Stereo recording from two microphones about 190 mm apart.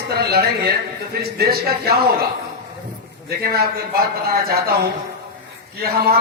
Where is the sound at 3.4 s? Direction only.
55° right (ahead or behind).